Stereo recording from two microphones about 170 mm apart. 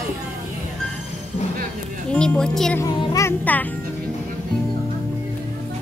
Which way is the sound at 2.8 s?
20° left (ahead or behind).